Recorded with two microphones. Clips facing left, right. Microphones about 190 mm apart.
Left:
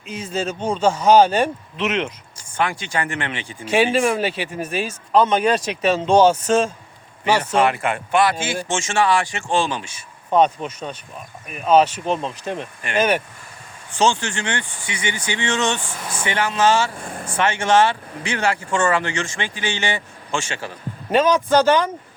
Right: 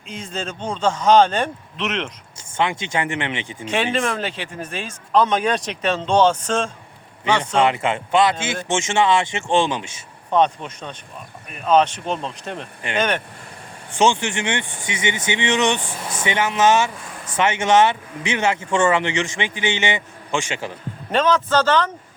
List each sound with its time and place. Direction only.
0.1 s speech: 5° left (ahead or behind)
2.6 s speech: 20° right (ahead or behind)
3.9 s speech: 10° left (ahead or behind)
7.6 s speech: 20° right (ahead or behind)
10.2 s speech: 5° left (ahead or behind)
13.9 s speech: 20° right (ahead or behind)
21.1 s speech: 10° left (ahead or behind)